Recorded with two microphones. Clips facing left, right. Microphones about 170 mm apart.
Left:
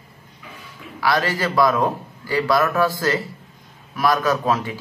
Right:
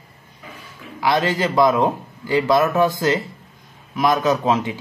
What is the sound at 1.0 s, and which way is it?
A man's voice, 25° right (ahead or behind).